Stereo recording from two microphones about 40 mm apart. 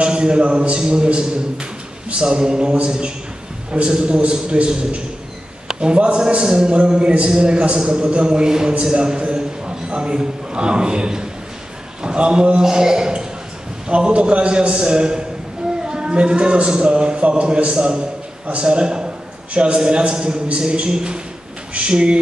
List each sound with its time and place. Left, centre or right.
0.0 s a man's voice: right